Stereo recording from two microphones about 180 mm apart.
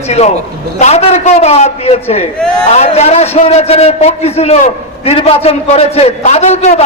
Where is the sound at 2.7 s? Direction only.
35° left (ahead or behind).